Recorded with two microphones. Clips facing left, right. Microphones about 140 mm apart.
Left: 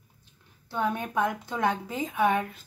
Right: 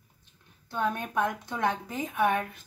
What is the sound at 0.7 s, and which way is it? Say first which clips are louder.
A woman's voice: left 1 dB; 10° left (ahead or behind).